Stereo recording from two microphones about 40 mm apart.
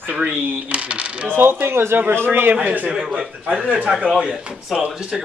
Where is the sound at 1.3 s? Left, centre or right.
Right.